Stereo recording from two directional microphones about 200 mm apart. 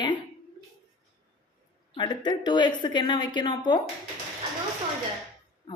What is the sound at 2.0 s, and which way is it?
A woman's voice, 20° left (ahead or behind).